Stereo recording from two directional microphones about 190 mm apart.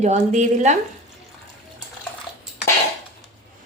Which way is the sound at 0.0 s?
40° right (ahead or behind).